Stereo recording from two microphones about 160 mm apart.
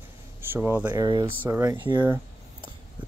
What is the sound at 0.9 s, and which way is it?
Speech, 25° right (ahead or behind).